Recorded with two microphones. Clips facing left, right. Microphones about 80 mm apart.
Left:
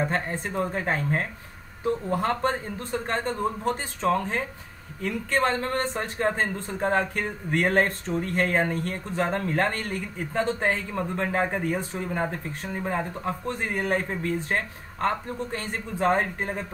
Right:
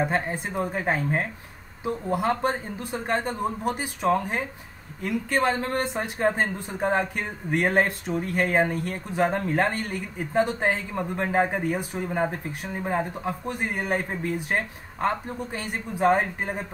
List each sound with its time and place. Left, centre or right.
0.0 s a man's voice: centre